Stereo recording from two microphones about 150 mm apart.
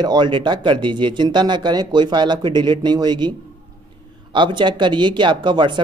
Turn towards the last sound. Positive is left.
turn(degrees=-30)  # may be behind; listen again after turning